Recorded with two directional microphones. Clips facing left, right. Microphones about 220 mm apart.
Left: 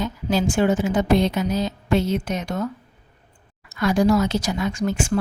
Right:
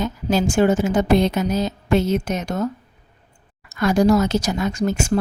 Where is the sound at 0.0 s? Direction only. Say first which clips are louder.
Right 2 dB; 45° right (ahead or behind).